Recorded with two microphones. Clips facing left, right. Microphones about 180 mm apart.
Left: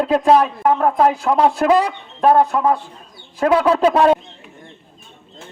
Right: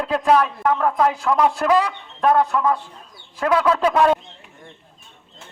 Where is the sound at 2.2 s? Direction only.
35° left (ahead or behind).